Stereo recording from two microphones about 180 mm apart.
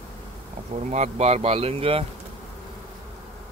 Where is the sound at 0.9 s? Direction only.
40° right (ahead or behind).